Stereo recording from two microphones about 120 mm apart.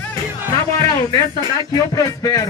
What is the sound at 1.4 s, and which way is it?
Speech, 30° left (ahead or behind).